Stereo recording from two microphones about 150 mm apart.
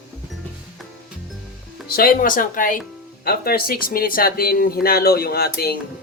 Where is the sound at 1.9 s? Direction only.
85° left; by 2.8 s 65° left (ahead or behind).